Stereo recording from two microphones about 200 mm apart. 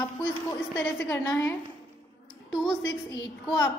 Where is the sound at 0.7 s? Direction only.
10° left (ahead or behind).